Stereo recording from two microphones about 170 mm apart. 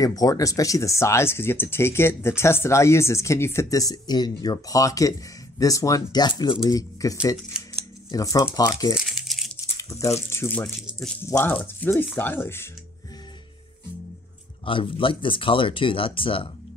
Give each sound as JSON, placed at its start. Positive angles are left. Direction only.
{"t": 0.0, "sound": "speech", "side_deg": 20}
{"t": 7.5, "sound": "scissors", "side_deg": -5}
{"t": 8.1, "sound": "speech", "side_deg": 20}
{"t": 8.9, "sound": "crumpling", "side_deg": -5}
{"t": 9.8, "sound": "speech", "side_deg": 20}
{"t": 14.6, "sound": "speech", "side_deg": 30}